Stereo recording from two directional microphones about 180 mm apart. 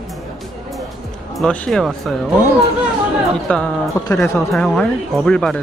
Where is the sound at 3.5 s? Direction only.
5° left (ahead or behind).